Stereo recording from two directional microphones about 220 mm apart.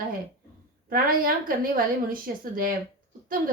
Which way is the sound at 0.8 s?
40° right (ahead or behind).